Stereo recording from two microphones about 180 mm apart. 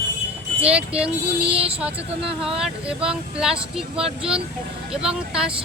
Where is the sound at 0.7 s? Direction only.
5° right (ahead or behind).